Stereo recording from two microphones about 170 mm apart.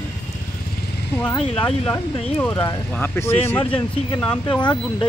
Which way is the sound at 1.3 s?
30° left (ahead or behind).